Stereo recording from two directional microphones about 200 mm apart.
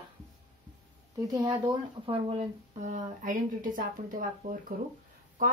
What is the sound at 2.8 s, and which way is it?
Speech, 40° right (ahead or behind).